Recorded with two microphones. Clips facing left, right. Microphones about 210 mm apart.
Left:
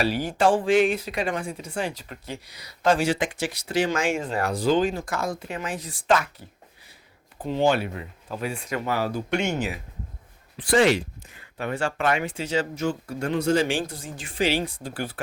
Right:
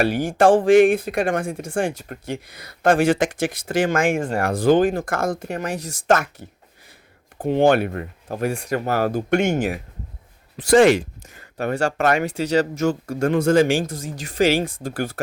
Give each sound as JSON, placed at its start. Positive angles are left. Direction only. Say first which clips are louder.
{"t": 0.0, "sound": "speech", "louder": "right 5 dB", "side_deg": -50}
{"t": 5.8, "sound": "speech", "louder": "right 5 dB", "side_deg": -90}
{"t": 7.3, "sound": "speech", "louder": "right 6 dB", "side_deg": -55}